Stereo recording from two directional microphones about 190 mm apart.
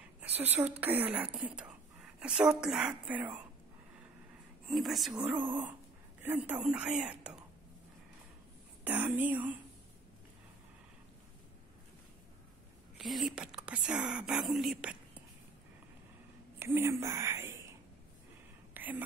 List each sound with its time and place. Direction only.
0.4 s a woman's voice: 10° right (ahead or behind)
4.6 s a woman's voice: centre (ahead or behind)
6.2 s speech: 10° right (ahead or behind)
8.8 s speech: 10° right (ahead or behind)
12.9 s speech: centre (ahead or behind)
16.5 s speech: 10° right (ahead or behind)
18.7 s whispering: 10° right (ahead or behind)